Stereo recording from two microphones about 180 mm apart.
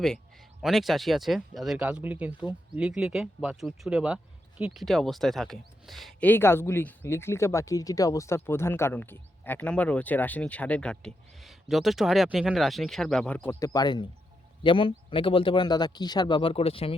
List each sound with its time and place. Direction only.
0.6 s speech: centre (ahead or behind); by 17.0 s 30° left (ahead or behind)